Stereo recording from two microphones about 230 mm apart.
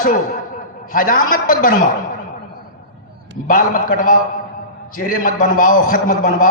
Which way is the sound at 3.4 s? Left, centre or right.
Left.